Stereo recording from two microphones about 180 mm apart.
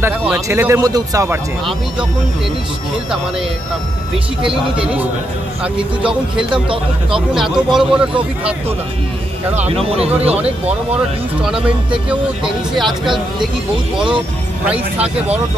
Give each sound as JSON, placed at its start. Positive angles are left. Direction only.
{"t": 0.3, "sound": "speech", "side_deg": -15}
{"t": 5.8, "sound": "speech", "side_deg": -5}
{"t": 9.6, "sound": "speech", "side_deg": -35}
{"t": 11.4, "sound": "speech", "side_deg": -5}
{"t": 12.7, "sound": "speech", "side_deg": 0}